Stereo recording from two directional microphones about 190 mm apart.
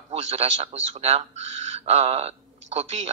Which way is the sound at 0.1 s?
35° right (ahead or behind).